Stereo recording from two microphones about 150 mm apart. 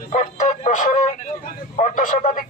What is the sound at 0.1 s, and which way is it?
Music, 55° left (ahead or behind).